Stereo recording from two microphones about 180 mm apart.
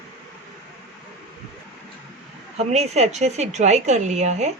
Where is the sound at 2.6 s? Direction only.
35° right (ahead or behind).